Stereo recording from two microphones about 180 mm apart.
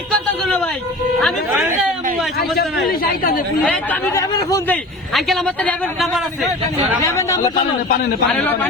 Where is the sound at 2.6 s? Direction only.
55° left (ahead or behind).